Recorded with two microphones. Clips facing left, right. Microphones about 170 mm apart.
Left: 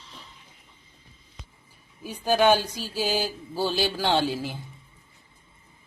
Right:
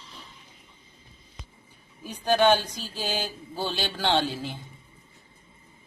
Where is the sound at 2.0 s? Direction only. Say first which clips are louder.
Left 1 dB; 5° left (ahead or behind).